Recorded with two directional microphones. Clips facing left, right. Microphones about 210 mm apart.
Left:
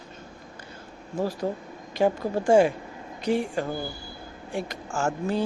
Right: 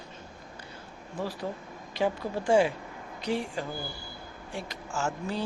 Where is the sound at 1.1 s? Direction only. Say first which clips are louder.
Left 6 dB; 45° left (ahead or behind).